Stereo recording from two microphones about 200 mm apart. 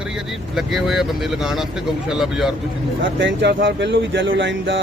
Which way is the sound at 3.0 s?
65° right (ahead or behind).